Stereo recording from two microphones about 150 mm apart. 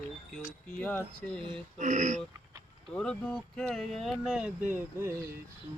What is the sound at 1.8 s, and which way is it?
Speech, 55° right (ahead or behind).